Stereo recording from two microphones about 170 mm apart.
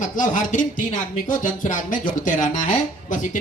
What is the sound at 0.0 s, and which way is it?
Speech, 50° left (ahead or behind).